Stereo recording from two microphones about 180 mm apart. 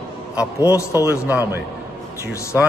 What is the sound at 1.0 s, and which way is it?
Speech, 15° right (ahead or behind).